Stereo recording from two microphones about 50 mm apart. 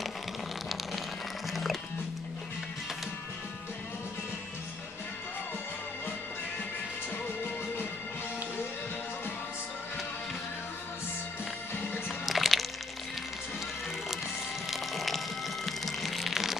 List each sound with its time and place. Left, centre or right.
1.5 s music: centre
11.7 s music: left
12.3 s music: centre
14.7 s music: centre